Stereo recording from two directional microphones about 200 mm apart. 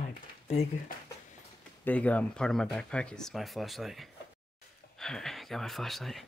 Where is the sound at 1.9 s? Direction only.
5° left (ahead or behind).